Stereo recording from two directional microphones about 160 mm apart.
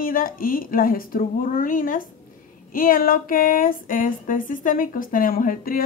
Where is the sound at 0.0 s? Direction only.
60° left (ahead or behind).